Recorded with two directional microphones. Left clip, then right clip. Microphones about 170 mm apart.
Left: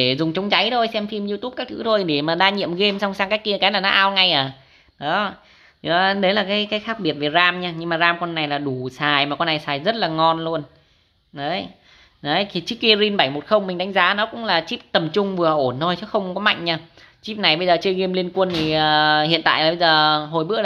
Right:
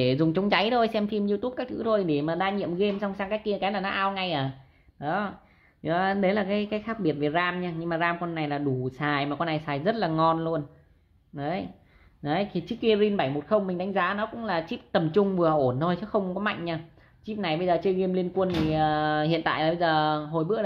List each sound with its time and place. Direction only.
0.0 s speech: 5° left (ahead or behind)
1.9 s a woman's voice: 20° left (ahead or behind)